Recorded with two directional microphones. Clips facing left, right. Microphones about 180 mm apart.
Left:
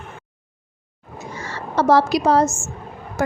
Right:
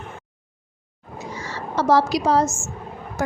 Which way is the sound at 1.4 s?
55° left (ahead or behind).